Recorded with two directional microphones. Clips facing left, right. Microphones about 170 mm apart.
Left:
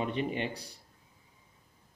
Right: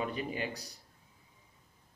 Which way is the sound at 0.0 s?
30° left (ahead or behind).